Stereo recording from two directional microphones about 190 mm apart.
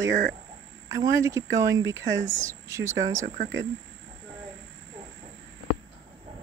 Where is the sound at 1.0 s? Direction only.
15° right (ahead or behind).